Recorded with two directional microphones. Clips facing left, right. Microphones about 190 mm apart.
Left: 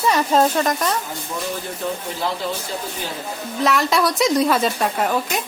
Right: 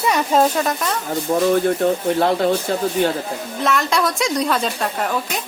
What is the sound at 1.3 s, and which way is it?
Speech, 40° right (ahead or behind).